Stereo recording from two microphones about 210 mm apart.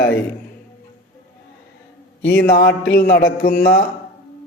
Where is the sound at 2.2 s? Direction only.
45° left (ahead or behind).